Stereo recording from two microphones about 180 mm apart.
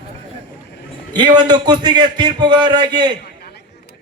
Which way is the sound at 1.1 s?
25° right (ahead or behind).